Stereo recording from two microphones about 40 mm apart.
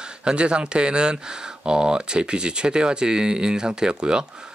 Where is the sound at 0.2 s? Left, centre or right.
Right.